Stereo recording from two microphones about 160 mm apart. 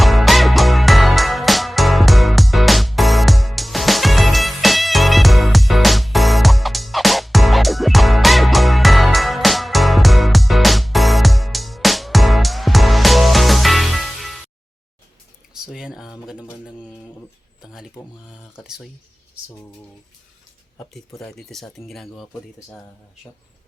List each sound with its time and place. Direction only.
0.0 s music: centre (ahead or behind)
15.6 s a sound: 5° right (ahead or behind)
18.0 s speech: 20° left (ahead or behind)
18.5 s speech: 5° right (ahead or behind)
21.2 s speech: centre (ahead or behind)